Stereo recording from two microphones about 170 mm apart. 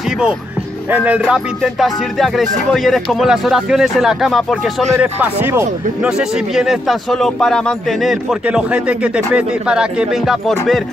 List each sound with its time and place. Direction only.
0.8 s speech: 10° right (ahead or behind)